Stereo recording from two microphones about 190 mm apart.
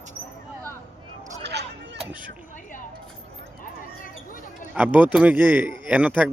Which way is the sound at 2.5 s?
45° left (ahead or behind).